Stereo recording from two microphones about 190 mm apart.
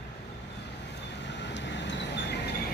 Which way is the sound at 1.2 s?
65° left (ahead or behind).